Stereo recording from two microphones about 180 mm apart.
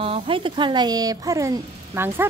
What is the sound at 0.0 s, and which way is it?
A woman's voice, 30° right (ahead or behind).